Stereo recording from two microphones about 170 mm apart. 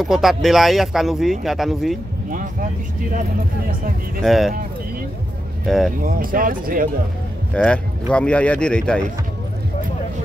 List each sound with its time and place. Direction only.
0.0 s speech: centre (ahead or behind)
4.2 s speech: centre (ahead or behind)
5.7 s speech: centre (ahead or behind)
5.9 s speech: 55° right (ahead or behind)
7.5 s speech: 5° left (ahead or behind)